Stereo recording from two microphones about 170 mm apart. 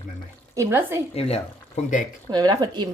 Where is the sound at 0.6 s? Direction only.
15° right (ahead or behind).